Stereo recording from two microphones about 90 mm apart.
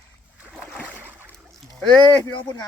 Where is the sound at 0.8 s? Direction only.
15° right (ahead or behind).